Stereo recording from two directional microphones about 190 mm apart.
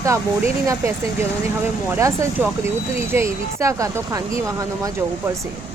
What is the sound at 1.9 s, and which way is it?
Speech, 15° right (ahead or behind).